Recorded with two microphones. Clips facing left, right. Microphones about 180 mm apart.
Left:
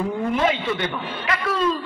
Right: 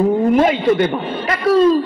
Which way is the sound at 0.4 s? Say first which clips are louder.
Right 9 dB; 45° right (ahead or behind).